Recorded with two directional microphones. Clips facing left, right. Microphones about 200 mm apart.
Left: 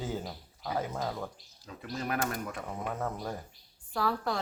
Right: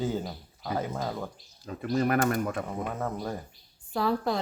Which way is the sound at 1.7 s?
55° right (ahead or behind).